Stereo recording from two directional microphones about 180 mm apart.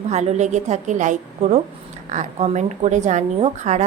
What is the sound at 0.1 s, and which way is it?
A woman's voice, 40° right (ahead or behind).